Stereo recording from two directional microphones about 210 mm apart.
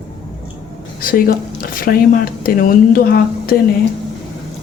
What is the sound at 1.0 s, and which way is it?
Speech, 45° left (ahead or behind).